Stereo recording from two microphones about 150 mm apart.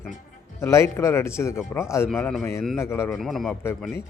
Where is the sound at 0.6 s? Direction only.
20° left (ahead or behind).